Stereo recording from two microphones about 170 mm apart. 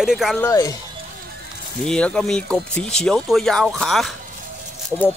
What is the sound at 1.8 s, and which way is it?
Speech, 5° left (ahead or behind).